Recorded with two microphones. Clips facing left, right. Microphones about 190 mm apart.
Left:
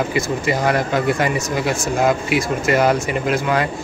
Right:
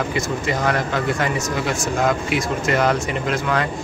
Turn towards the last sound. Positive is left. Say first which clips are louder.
# left 3 dB
turn(degrees=10)  # may be behind; listen again after turning